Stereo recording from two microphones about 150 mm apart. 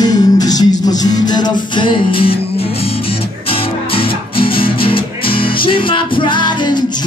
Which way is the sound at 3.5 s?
35° left (ahead or behind).